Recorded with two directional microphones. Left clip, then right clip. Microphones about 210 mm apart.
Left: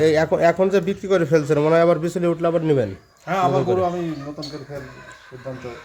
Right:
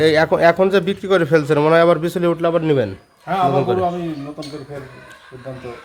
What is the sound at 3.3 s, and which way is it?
Speech, 20° left (ahead or behind).